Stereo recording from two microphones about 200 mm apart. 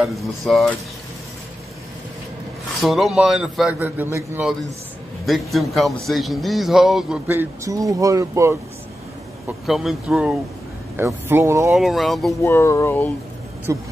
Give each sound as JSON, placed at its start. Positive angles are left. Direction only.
{"t": 0.4, "sound": "a man's voice", "side_deg": 0}
{"t": 2.8, "sound": "a man's voice", "side_deg": 0}
{"t": 7.2, "sound": "speech", "side_deg": -15}
{"t": 9.5, "sound": "a man's voice", "side_deg": 0}
{"t": 11.7, "sound": "a man's voice", "side_deg": 0}
{"t": 12.4, "sound": "speech", "side_deg": 15}
{"t": 13.7, "sound": "speech", "side_deg": -15}